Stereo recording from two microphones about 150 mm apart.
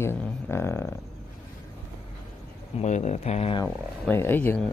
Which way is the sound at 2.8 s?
50° left (ahead or behind).